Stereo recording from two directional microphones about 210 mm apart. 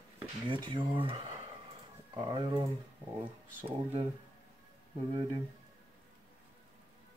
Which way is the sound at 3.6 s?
25° right (ahead or behind).